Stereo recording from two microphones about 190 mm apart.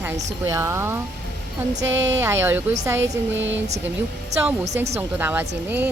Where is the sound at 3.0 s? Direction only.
80° right.